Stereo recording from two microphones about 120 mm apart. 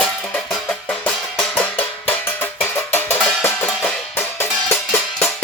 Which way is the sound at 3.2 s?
Centre (ahead or behind).